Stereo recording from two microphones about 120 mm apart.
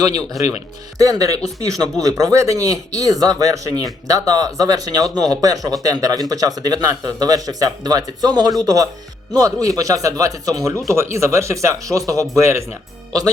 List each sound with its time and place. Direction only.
0.0 s speech: 30° right (ahead or behind)